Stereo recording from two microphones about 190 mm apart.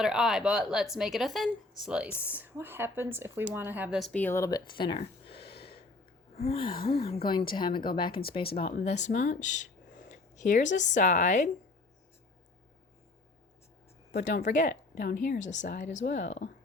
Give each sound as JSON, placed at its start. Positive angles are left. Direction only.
{"t": 0.0, "sound": "a woman's voice", "side_deg": 0}
{"t": 6.3, "sound": "gasp", "side_deg": 35}
{"t": 6.8, "sound": "speech", "side_deg": 30}
{"t": 14.1, "sound": "speech", "side_deg": 45}